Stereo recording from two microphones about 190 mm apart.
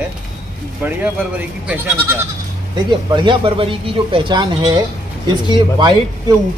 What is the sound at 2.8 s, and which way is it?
Speech, 25° right (ahead or behind).